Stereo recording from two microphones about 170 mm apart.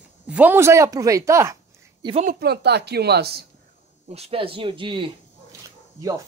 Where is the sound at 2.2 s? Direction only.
60° right (ahead or behind).